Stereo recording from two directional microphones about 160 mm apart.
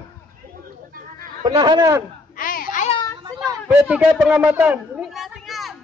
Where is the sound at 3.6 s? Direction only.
5° right (ahead or behind).